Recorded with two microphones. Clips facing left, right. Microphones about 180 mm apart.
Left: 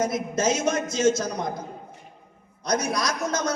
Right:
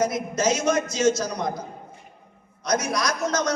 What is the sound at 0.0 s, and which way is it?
Speech, 30° left (ahead or behind).